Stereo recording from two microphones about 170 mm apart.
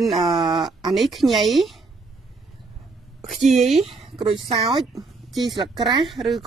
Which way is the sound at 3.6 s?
35° right (ahead or behind).